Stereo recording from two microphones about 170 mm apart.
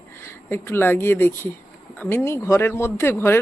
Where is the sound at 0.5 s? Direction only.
15° left (ahead or behind).